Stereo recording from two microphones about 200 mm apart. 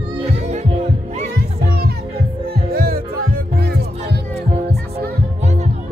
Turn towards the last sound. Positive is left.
turn(degrees=-55)  # may be behind; listen again after turning